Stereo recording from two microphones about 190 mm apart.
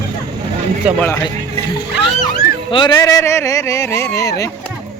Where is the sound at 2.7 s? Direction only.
25° left (ahead or behind).